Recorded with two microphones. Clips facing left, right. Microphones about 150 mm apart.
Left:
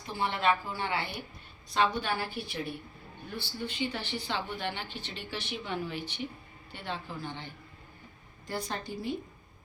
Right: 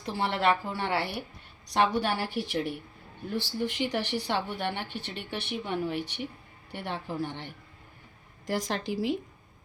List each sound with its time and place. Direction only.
0.0 s a woman's voice: 70° right (ahead or behind)
8.4 s a woman's voice: 90° right